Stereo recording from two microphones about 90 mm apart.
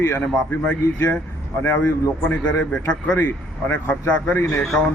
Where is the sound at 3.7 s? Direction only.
20° left (ahead or behind).